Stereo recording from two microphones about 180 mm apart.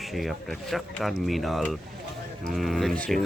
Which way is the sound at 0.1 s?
Centre (ahead or behind).